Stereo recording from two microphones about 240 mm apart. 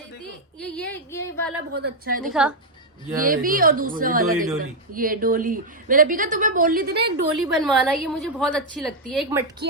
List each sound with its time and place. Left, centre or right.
0.6 s a sound: centre
1.8 s a woman's voice: right
2.2 s a woman's voice: centre
3.2 s a woman's voice: right
7.3 s a woman's voice: centre